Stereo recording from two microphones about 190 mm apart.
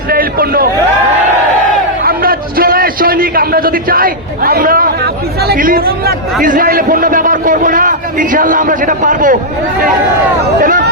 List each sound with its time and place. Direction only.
0.1 s a man's voice: 50° right (ahead or behind)
2.0 s a sound: 50° right (ahead or behind)
6.4 s a man's voice: 45° right (ahead or behind)
10.6 s a man's voice: 45° right (ahead or behind)